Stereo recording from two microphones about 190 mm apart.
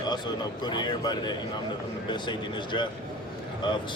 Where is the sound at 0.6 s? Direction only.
20° left (ahead or behind).